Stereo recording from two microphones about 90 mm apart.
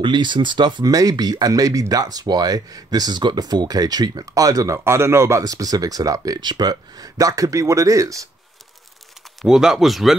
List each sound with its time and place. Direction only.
0.0 s speech: 60° right (ahead or behind)
0.8 s speech: 45° right (ahead or behind)
9.4 s speech: 5° right (ahead or behind)